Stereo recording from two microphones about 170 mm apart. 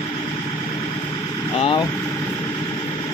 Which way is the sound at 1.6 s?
30° left (ahead or behind).